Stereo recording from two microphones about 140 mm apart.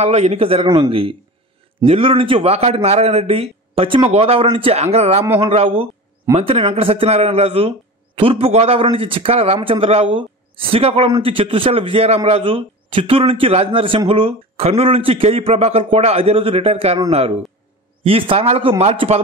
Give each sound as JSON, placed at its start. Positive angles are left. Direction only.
{"t": 0.0, "sound": "a man's voice", "side_deg": -50}